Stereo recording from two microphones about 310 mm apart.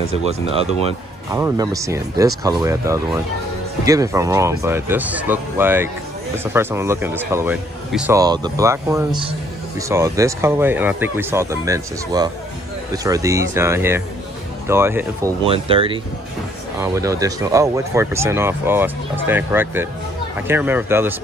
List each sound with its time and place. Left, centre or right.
0.2 s speech: centre